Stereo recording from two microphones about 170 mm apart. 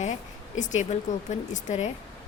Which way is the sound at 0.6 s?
45° left (ahead or behind).